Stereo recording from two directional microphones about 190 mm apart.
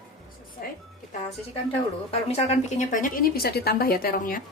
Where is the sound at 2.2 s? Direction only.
35° left (ahead or behind).